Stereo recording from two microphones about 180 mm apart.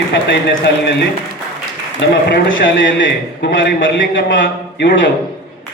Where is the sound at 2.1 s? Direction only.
65° left (ahead or behind).